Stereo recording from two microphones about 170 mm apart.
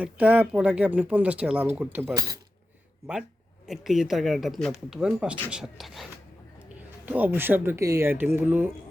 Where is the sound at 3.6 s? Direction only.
Centre (ahead or behind).